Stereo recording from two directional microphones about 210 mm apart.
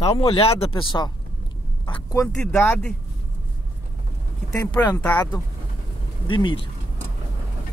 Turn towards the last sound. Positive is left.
turn(degrees=25)  # may be behind; listen again after turning